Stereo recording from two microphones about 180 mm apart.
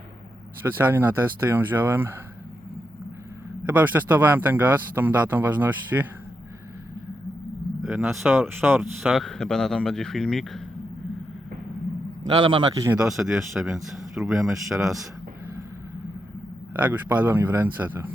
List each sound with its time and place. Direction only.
0.6 s speech: 10° right (ahead or behind)
3.6 s speech: 10° right (ahead or behind)
7.8 s speech: centre (ahead or behind)
12.4 s a man's voice: 25° right (ahead or behind)
13.0 s speech: 5° right (ahead or behind)
16.7 s speech: 10° right (ahead or behind)